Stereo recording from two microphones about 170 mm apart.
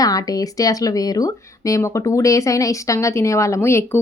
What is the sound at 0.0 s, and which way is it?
Speech, 20° left (ahead or behind).